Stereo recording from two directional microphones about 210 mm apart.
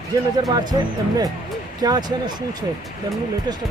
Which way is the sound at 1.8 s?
20° right (ahead or behind).